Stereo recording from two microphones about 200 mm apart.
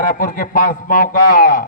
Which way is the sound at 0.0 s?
45° left (ahead or behind).